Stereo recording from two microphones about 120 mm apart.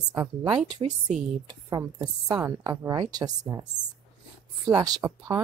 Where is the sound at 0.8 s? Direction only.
45° right (ahead or behind).